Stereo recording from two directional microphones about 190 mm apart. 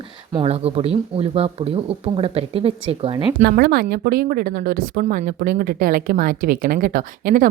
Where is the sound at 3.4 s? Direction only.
55° right (ahead or behind).